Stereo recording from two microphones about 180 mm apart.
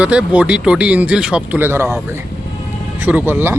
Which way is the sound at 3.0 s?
10° right (ahead or behind).